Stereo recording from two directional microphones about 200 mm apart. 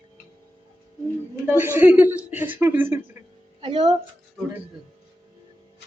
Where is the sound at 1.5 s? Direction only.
10° right (ahead or behind).